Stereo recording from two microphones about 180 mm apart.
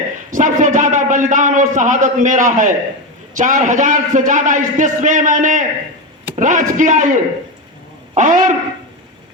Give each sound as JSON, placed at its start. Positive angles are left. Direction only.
{"t": 0.3, "sound": "a man's voice", "side_deg": -45}